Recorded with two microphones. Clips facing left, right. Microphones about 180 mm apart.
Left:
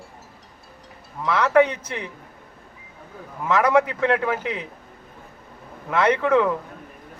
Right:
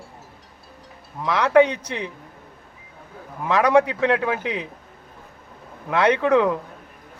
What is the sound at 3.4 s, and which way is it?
Speech, 15° right (ahead or behind).